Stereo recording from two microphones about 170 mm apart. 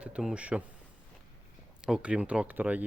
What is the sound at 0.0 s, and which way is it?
Speech, 5° right (ahead or behind).